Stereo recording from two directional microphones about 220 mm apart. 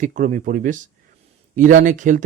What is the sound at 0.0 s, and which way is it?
Speech, 35° right (ahead or behind).